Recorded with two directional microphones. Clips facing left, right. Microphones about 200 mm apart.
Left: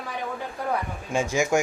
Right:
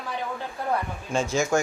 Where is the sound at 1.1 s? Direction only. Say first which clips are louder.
Left 1 dB; 15° left (ahead or behind).